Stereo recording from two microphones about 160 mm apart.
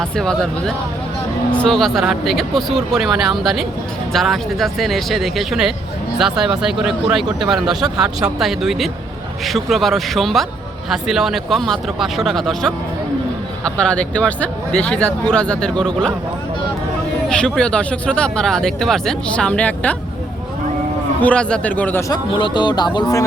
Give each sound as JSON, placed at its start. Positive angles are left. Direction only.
{"t": 0.0, "sound": "speech", "side_deg": 5}
{"t": 17.2, "sound": "speech", "side_deg": 5}
{"t": 21.2, "sound": "speech", "side_deg": 5}
{"t": 22.1, "sound": "speech", "side_deg": 30}